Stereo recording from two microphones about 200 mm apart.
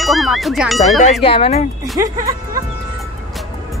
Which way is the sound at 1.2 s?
30° left (ahead or behind).